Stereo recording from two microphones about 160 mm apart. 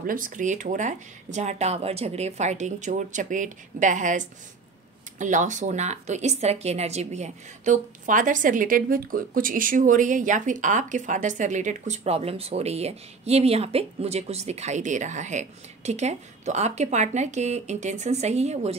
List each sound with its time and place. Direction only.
0.0 s a woman's voice: 60° right (ahead or behind); by 18.8 s 45° right (ahead or behind)